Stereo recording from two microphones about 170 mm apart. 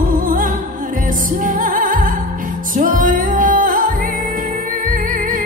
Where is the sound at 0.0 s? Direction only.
55° right (ahead or behind).